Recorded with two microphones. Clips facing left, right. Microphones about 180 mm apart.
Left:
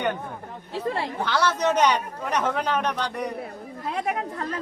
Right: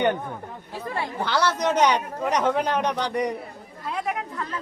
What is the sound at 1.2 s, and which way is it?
Speech, 10° right (ahead or behind).